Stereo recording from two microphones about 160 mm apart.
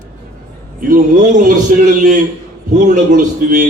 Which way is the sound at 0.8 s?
60° right (ahead or behind).